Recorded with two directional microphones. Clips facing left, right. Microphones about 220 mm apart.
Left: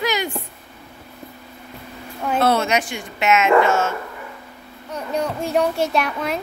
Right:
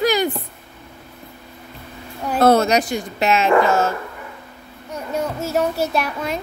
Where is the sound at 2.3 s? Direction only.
40° right (ahead or behind).